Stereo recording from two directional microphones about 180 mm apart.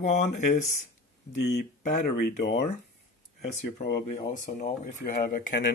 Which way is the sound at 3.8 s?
65° left (ahead or behind).